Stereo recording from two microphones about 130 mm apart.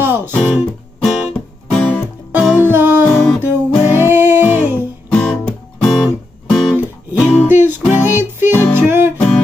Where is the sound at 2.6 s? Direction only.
15° right (ahead or behind).